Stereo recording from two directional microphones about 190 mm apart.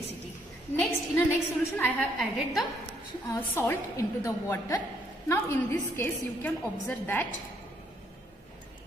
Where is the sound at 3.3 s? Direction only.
10° left (ahead or behind).